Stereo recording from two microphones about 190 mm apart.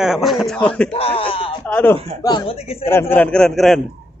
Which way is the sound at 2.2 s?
20° left (ahead or behind).